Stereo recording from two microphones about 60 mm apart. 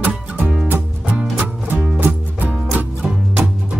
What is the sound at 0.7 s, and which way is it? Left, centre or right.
Music, right.